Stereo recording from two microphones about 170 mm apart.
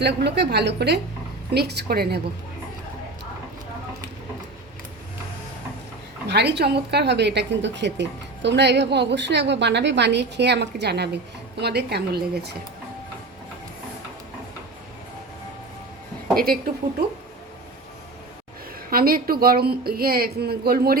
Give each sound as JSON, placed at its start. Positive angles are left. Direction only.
{"t": 0.0, "sound": "a woman's voice", "side_deg": -85}
{"t": 1.5, "sound": "speech", "side_deg": -75}
{"t": 6.2, "sound": "a woman's voice", "side_deg": -80}
{"t": 18.9, "sound": "a woman's voice", "side_deg": -60}